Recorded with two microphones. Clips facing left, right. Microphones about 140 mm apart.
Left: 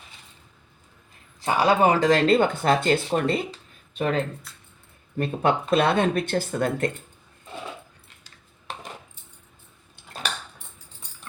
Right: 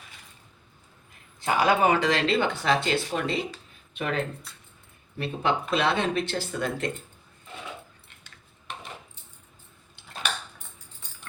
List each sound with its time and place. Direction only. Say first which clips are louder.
1.4 s speech: left 2 dB; 30° left (ahead or behind); by 3.4 s 50° left (ahead or behind)
3.9 s speech: left 5 dB; 35° left (ahead or behind)
4.5 s speech: even; centre (ahead or behind)
5.1 s speech: left 4 dB; 50° left (ahead or behind)